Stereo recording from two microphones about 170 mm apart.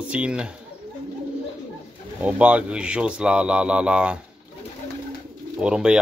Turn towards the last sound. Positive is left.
turn(degrees=-5)  # may be behind; listen again after turning